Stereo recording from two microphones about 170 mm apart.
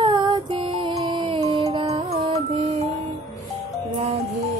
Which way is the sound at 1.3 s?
35° right (ahead or behind).